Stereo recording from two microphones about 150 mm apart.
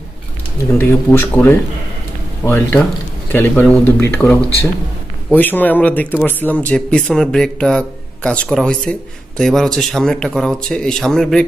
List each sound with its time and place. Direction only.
0.7 s speech: 15° left (ahead or behind)